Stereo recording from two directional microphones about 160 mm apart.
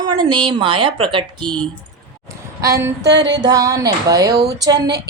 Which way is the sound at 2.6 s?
20° right (ahead or behind).